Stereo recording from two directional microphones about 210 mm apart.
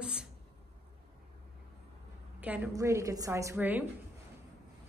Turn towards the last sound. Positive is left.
turn(degrees=-10)  # may be behind; listen again after turning